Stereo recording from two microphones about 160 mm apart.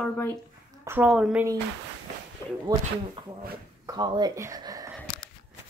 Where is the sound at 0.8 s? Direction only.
15° right (ahead or behind).